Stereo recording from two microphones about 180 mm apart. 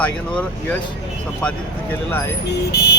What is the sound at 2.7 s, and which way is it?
Vehicle, 65° left (ahead or behind).